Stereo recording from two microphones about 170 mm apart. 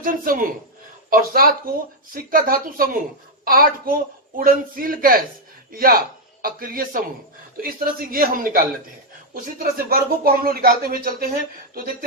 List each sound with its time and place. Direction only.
0.0 s speech: 55° right (ahead or behind)